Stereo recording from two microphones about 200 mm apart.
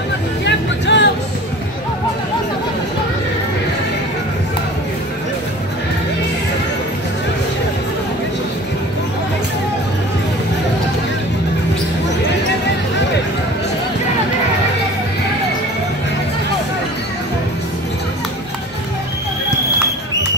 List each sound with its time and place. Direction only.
0.5 s vehicle: 60° left (ahead or behind)